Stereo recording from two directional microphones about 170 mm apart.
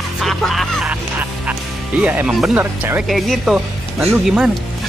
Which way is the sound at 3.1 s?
Centre (ahead or behind).